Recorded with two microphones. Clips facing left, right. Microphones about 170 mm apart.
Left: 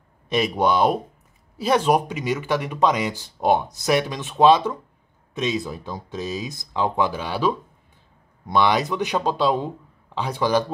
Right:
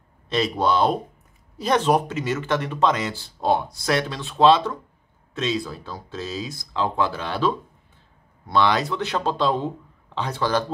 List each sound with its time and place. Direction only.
0.3 s speech: 15° left (ahead or behind)